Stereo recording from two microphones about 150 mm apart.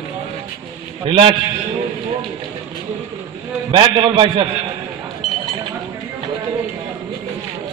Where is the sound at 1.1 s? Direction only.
35° right (ahead or behind).